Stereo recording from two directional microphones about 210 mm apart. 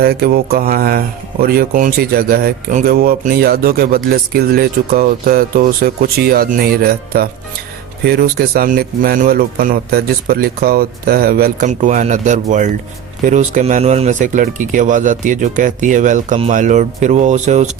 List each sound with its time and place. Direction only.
0.0 s speech: 45° right (ahead or behind)